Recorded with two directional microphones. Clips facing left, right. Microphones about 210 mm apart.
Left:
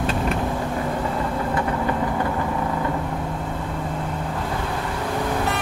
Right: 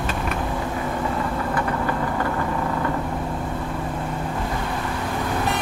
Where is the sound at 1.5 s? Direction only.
20° left (ahead or behind).